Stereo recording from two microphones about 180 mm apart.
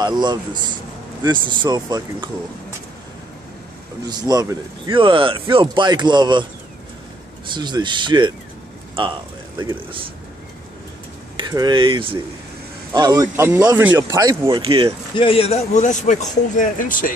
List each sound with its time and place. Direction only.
0.0 s speech: 25° right (ahead or behind)
4.0 s speech: 20° right (ahead or behind)
7.5 s a man's voice: 25° right (ahead or behind)
11.3 s speech: 25° right (ahead or behind)
15.1 s a man's voice: 30° left (ahead or behind); by 17.1 s 50° left (ahead or behind)